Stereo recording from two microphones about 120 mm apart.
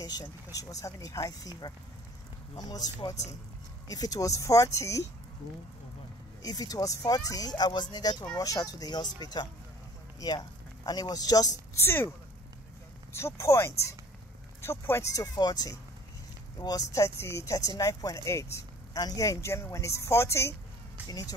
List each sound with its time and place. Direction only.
0.0 s speech: 30° left (ahead or behind)
6.4 s speech: 30° left (ahead or behind)
13.1 s speech: 25° left (ahead or behind)
15.3 s speech: 35° left (ahead or behind)